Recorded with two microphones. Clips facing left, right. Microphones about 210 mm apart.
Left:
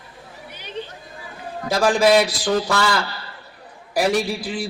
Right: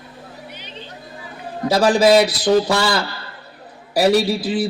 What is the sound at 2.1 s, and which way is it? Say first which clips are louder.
Speech: right 3 dB; 35° right (ahead or behind).